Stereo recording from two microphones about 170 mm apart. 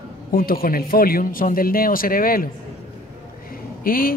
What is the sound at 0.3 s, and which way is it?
Speech, 60° left (ahead or behind).